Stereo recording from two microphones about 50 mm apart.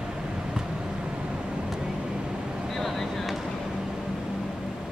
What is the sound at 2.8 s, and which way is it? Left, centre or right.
Vehicle, centre.